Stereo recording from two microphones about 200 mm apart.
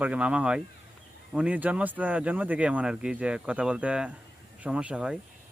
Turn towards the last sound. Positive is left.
turn(degrees=-5)  # may be behind; listen again after turning